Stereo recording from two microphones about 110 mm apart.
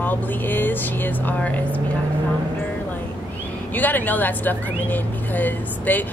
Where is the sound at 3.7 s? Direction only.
15° left (ahead or behind).